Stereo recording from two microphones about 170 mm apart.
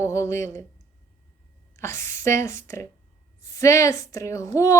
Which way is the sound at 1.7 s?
15° left (ahead or behind).